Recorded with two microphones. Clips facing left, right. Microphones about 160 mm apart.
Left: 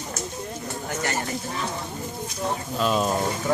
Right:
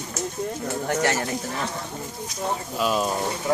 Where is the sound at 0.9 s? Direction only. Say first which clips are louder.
Right 5 dB; 90° right.